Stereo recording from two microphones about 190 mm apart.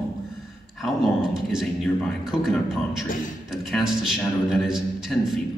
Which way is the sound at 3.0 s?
45° left (ahead or behind).